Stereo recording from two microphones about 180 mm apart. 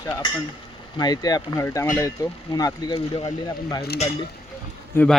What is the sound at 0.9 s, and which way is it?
Speech, 20° left (ahead or behind).